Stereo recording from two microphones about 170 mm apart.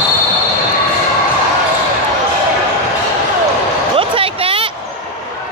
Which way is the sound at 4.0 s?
30° right (ahead or behind).